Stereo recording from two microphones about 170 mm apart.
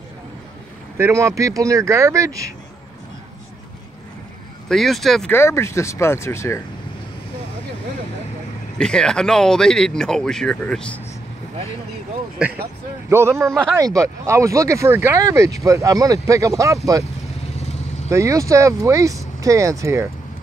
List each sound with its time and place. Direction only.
0.9 s speech: 15° right (ahead or behind)
4.6 s speech: centre (ahead or behind)
5.3 s speech: 15° left (ahead or behind)
8.7 s speech: 5° left (ahead or behind)
12.4 s speech: 5° right (ahead or behind)
18.0 s speech: 15° right (ahead or behind)